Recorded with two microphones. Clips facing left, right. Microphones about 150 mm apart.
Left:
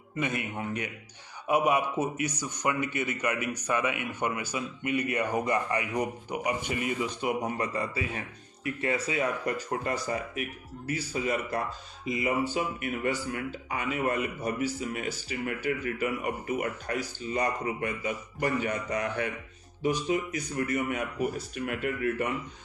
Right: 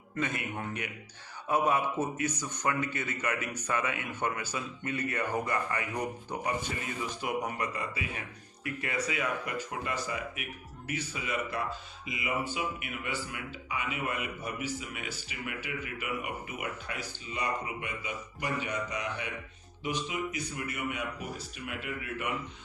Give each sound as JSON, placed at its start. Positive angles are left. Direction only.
{"t": 0.5, "sound": "speech", "side_deg": 20}